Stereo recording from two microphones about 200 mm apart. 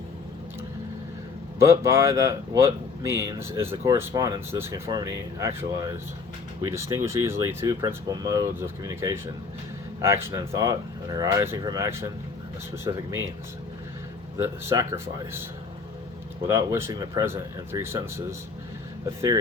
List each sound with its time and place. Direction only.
1.6 s speech: 15° right (ahead or behind)
14.3 s speech: 10° right (ahead or behind)
16.5 s speech: 15° right (ahead or behind)